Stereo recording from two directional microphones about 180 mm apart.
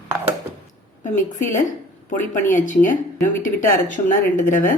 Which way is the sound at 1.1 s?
45° left (ahead or behind).